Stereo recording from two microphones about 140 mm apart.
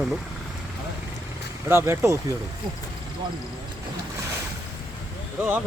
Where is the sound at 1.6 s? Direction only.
20° right (ahead or behind).